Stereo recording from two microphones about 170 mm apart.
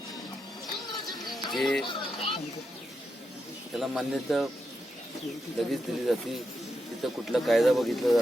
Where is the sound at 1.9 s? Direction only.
30° left (ahead or behind).